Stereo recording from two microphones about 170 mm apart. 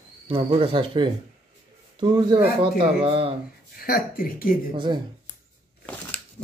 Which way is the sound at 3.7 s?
60° left (ahead or behind).